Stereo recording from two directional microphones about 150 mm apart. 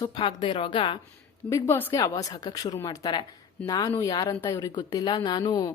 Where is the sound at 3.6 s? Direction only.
20° left (ahead or behind).